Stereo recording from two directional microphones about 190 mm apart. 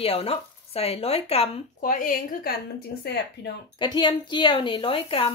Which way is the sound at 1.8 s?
45° left (ahead or behind).